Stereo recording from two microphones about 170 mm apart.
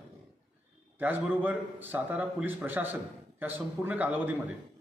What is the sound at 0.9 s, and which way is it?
A man's voice, 10° right (ahead or behind).